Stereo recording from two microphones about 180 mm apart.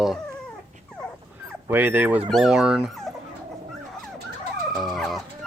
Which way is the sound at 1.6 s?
10° right (ahead or behind).